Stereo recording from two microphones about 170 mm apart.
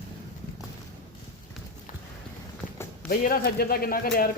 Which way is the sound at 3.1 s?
60° left (ahead or behind).